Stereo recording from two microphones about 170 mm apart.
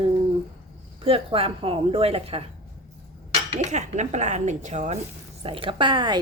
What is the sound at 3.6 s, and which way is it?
Speech, 45° right (ahead or behind).